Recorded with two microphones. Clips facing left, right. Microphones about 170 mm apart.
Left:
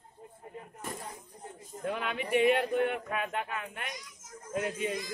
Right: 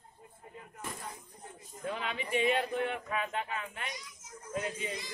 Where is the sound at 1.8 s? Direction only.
55° left (ahead or behind).